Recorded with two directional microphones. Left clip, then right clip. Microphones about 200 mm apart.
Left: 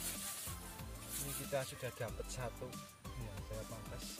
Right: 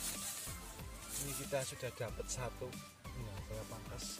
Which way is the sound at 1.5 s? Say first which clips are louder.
Even; 20° right (ahead or behind).